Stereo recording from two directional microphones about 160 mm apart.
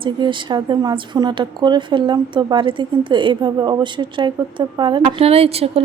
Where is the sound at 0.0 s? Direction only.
30° right (ahead or behind).